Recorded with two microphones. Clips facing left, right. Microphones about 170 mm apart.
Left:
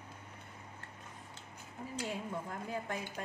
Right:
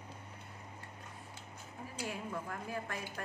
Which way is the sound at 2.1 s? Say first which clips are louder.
Right 1 dB; 20° left (ahead or behind).